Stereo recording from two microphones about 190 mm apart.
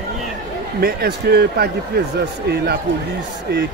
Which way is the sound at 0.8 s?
55° right (ahead or behind).